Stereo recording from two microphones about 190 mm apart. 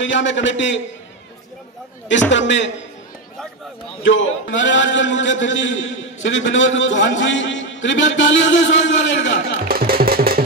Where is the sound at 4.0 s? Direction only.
80° left.